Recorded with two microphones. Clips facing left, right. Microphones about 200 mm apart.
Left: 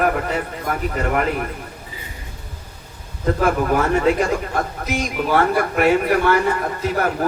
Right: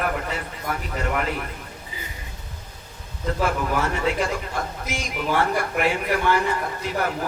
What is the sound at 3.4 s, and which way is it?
A man's voice, 50° left (ahead or behind).